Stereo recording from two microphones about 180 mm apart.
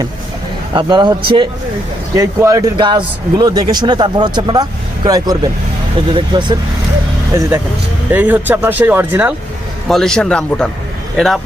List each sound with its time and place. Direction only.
0.7 s a man's voice: 25° right (ahead or behind)
8.1 s speech: 10° right (ahead or behind)
9.9 s a man's voice: 5° left (ahead or behind)